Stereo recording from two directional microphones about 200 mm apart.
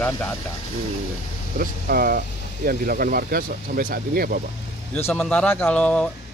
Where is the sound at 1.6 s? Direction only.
50° right (ahead or behind).